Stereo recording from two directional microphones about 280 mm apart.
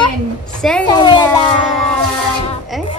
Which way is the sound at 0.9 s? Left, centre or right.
Centre.